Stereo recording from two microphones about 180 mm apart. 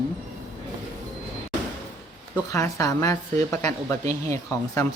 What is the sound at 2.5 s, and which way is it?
A woman's voice, 20° left (ahead or behind).